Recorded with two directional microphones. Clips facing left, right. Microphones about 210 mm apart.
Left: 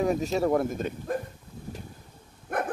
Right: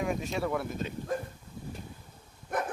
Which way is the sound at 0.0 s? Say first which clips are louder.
Left 6 dB; 40° left (ahead or behind).